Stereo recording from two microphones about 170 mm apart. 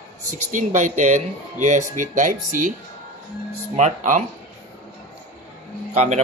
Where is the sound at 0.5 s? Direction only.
45° right (ahead or behind).